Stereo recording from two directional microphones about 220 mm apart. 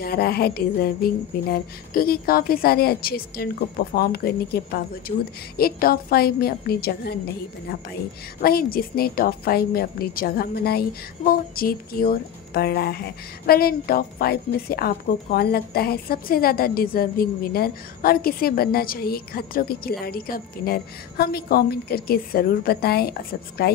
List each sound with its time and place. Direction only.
0.0 s a woman's voice: 45° left (ahead or behind)
8.4 s a woman's voice: 40° left (ahead or behind)